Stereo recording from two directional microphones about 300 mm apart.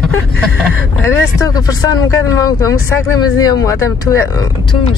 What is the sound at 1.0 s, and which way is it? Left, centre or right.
Speech, centre.